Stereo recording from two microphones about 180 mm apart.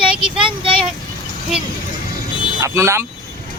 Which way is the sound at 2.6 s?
15° right (ahead or behind).